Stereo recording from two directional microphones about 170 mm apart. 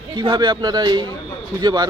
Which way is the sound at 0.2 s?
25° right (ahead or behind).